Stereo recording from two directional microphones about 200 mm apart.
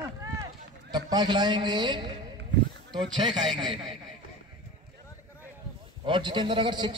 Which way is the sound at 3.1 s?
20° right (ahead or behind).